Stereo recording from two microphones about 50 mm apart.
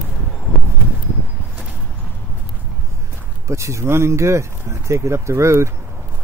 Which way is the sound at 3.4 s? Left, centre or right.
Right.